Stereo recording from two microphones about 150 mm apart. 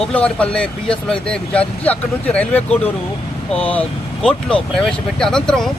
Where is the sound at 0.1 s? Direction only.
10° left (ahead or behind).